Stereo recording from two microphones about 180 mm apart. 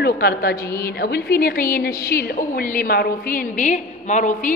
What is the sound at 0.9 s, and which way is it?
A woman's voice, 60° left (ahead or behind).